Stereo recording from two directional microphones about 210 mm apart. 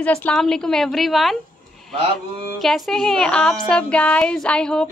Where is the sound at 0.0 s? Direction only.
5° left (ahead or behind).